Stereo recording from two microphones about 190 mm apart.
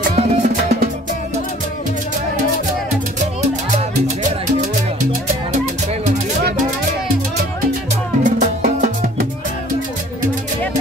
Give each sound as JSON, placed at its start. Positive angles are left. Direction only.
{"t": 0.1, "sound": "music", "side_deg": -35}
{"t": 8.2, "sound": "music", "side_deg": -40}